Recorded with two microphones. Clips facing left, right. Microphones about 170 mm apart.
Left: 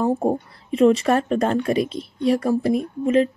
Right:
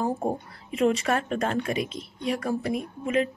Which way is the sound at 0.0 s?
30° left (ahead or behind).